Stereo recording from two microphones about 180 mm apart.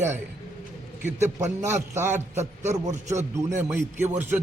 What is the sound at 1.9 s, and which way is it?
A man's voice, 15° right (ahead or behind).